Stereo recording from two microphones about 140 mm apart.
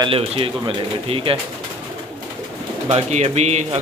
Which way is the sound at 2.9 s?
55° right (ahead or behind).